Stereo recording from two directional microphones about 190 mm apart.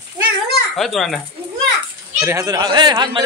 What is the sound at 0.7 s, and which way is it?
Speech, centre (ahead or behind).